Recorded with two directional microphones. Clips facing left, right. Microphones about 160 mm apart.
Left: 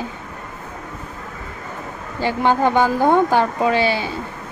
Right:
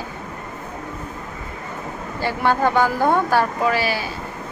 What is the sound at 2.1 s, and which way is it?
Speech, 15° left (ahead or behind).